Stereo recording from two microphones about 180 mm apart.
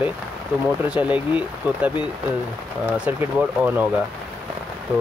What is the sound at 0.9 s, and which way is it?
Speech, 5° right (ahead or behind).